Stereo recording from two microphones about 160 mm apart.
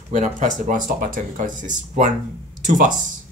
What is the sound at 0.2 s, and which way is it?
Speech, 55° right (ahead or behind).